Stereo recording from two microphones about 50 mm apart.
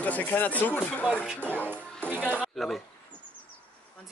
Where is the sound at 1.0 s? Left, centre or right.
Centre.